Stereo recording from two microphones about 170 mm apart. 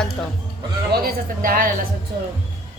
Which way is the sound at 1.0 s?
55° right (ahead or behind).